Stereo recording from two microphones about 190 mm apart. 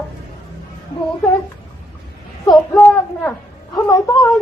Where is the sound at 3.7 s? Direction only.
20° left (ahead or behind).